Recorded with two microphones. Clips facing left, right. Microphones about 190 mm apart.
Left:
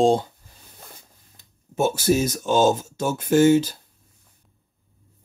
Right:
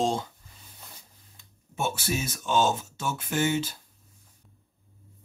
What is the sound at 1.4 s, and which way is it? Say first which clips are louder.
Speech: left 9 dB; 40° left (ahead or behind).